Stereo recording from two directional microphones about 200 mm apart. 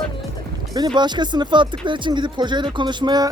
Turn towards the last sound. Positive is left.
turn(degrees=-20)  # may be behind; listen again after turning